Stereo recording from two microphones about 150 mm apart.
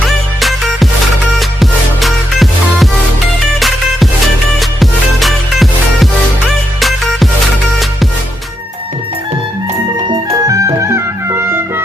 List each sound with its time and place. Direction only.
0.3 s music: centre (ahead or behind)
4.8 s music: centre (ahead or behind)
10.4 s clarinet: 20° right (ahead or behind)